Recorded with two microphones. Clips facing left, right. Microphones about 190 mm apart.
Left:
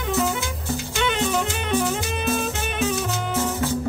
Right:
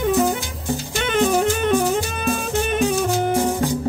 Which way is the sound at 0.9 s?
45° right (ahead or behind).